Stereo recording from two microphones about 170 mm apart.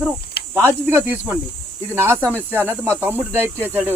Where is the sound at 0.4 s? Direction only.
70° left (ahead or behind).